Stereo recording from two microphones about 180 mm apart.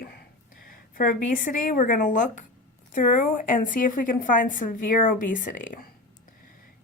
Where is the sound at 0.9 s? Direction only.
50° left (ahead or behind).